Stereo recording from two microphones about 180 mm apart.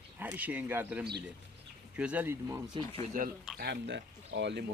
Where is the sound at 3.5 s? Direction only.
70° right (ahead or behind).